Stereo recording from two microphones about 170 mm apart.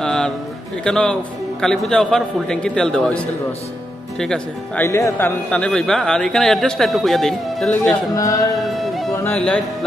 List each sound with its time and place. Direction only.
0.0 s a sound: 5° left (ahead or behind)
0.8 s speech: 5° left (ahead or behind)
4.8 s speech: 15° left (ahead or behind)
5.5 s speech: 5° left (ahead or behind)
8.2 s music: 20° left (ahead or behind)
8.6 s music: centre (ahead or behind)
9.2 s speech: 10° left (ahead or behind)